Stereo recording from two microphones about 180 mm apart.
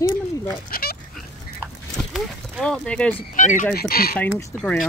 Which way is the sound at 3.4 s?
45° left (ahead or behind).